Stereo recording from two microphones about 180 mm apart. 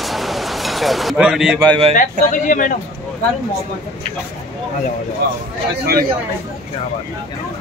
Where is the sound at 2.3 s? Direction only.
45° left (ahead or behind).